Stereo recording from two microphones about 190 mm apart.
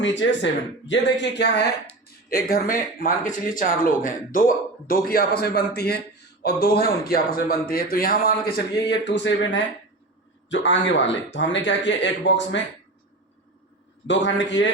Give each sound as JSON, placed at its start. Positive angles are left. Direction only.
{"t": 0.0, "sound": "speech", "side_deg": 75}
{"t": 2.3, "sound": "a man's voice", "side_deg": 50}
{"t": 14.1, "sound": "speech", "side_deg": 70}